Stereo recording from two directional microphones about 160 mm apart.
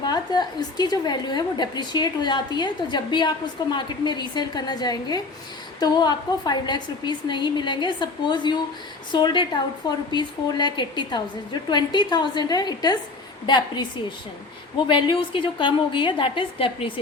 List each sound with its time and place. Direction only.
0.0 s a woman's voice: 25° left (ahead or behind)